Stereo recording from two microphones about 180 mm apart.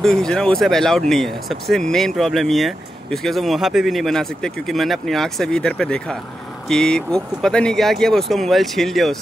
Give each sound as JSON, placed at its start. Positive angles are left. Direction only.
{"t": 0.0, "sound": "speech", "side_deg": 5}